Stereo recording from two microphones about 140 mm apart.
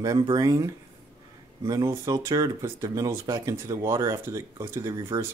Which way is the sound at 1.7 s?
25° right (ahead or behind).